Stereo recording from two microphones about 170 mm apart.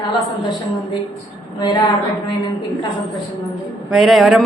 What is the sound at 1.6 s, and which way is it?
Speech, 25° left (ahead or behind).